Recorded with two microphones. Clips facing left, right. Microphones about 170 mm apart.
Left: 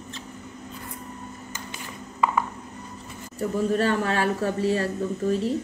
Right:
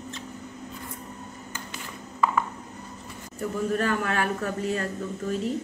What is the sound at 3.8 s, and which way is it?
Speech, 30° left (ahead or behind).